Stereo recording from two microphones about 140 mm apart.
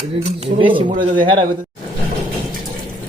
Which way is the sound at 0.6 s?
35° right (ahead or behind).